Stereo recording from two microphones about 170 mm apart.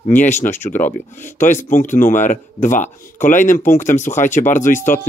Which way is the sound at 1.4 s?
50° left (ahead or behind).